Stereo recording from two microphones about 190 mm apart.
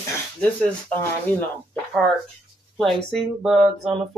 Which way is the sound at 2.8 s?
Centre (ahead or behind).